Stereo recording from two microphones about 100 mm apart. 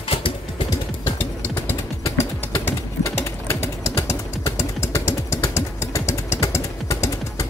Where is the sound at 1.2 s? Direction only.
25° left (ahead or behind).